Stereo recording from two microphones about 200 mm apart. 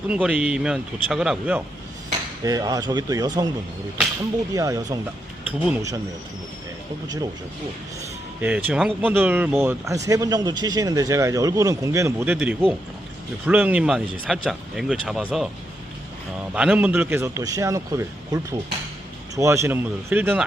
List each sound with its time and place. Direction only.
0.1 s speech: 5° right (ahead or behind)
2.4 s speech: 20° right (ahead or behind)
4.5 s speech: 15° right (ahead or behind)
8.4 s speech: 5° right (ahead or behind)
16.6 s speech: 5° right (ahead or behind)